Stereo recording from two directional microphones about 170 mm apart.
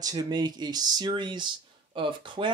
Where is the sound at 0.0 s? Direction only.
20° right (ahead or behind).